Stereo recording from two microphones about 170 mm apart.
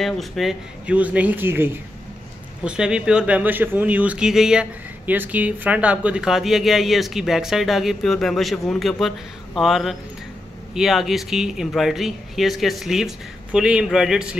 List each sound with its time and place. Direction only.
0.0 s speech: centre (ahead or behind)